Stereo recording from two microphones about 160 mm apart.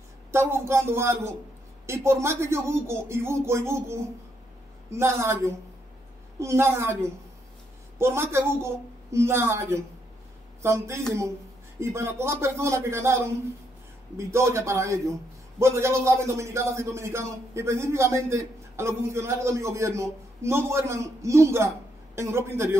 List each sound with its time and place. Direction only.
0.3 s speech: 15° right (ahead or behind)